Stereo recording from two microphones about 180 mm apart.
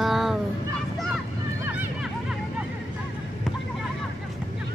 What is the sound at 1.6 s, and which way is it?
Hubbub, 10° right (ahead or behind).